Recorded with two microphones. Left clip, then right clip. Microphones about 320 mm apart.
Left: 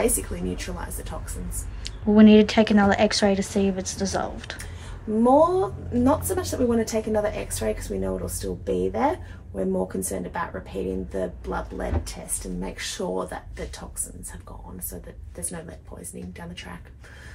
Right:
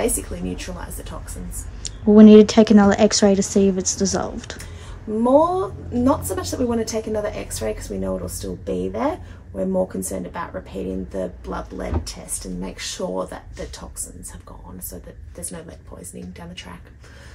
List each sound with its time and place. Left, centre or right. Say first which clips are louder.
0.0 s a woman's voice: right 1 dB; centre
2.1 s a woman's voice: right 6 dB; centre
5.2 s a woman's voice: right 2 dB; centre
16.3 s a woman's voice: right 1 dB; centre